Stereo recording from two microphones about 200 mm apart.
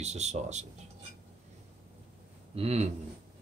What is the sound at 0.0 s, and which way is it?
Speech, 35° right (ahead or behind).